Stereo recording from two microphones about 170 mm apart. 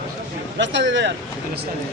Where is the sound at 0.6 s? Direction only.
90° right.